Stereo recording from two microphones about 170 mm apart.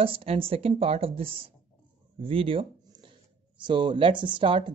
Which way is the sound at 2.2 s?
35° right (ahead or behind).